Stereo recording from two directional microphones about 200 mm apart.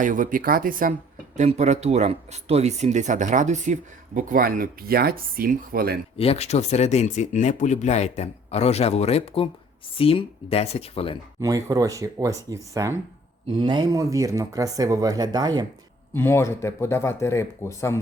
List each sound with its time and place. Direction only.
0.0 s speech: 40° right (ahead or behind)
6.1 s speech: 30° left (ahead or behind)
11.3 s speech: 15° right (ahead or behind)
16.1 s speech: 10° left (ahead or behind)